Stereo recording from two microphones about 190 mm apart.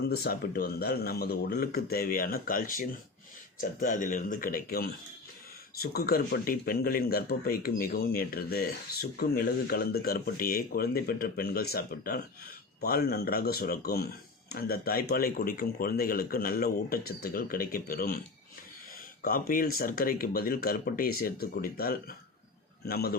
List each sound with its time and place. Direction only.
0.1 s speech: 55° left (ahead or behind)
19.2 s a man's voice: 50° left (ahead or behind)